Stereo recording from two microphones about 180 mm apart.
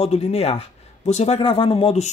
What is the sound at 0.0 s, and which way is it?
Speech, 35° left (ahead or behind).